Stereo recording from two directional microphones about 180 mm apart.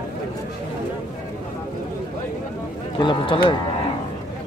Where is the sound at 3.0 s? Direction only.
25° left (ahead or behind).